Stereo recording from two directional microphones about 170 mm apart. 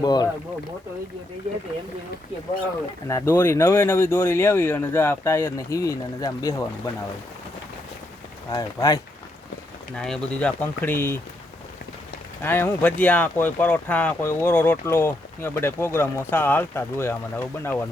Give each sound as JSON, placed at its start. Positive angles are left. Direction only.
{"t": 0.0, "sound": "speech", "side_deg": 25}
{"t": 3.1, "sound": "speech", "side_deg": 15}
{"t": 8.4, "sound": "speech", "side_deg": 20}
{"t": 9.9, "sound": "speech", "side_deg": 5}
{"t": 12.4, "sound": "speech", "side_deg": 10}